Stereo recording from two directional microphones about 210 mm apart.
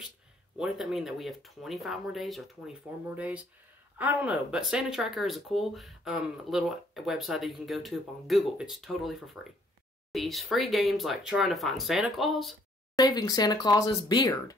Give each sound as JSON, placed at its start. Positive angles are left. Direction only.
{"t": 0.6, "sound": "speech", "side_deg": 0}
{"t": 12.9, "sound": "speech", "side_deg": 20}